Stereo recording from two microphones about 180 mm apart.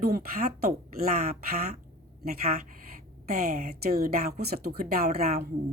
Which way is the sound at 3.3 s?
55° right (ahead or behind).